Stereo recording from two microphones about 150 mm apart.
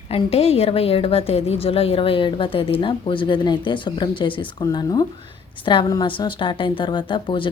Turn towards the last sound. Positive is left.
turn(degrees=35)  # may be behind; listen again after turning